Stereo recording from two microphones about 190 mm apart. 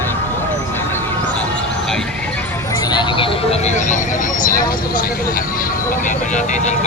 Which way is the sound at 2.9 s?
25° left (ahead or behind).